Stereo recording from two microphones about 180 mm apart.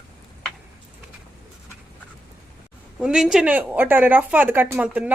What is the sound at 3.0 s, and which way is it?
Speech, 5° right (ahead or behind).